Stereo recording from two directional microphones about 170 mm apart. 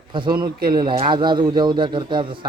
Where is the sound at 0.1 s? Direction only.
30° right (ahead or behind).